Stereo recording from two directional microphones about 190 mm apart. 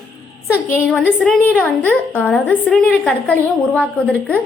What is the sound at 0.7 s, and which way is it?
A woman's voice, 10° left (ahead or behind).